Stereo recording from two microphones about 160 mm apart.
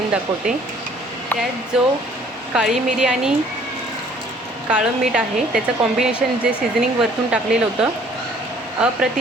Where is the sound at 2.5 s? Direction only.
5° right (ahead or behind).